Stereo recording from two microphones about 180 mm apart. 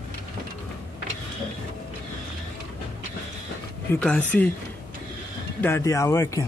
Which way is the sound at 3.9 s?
5° left (ahead or behind).